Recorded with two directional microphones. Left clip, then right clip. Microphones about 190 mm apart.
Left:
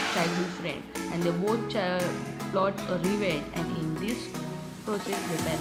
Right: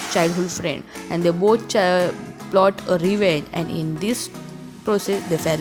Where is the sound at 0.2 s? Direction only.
50° right (ahead or behind).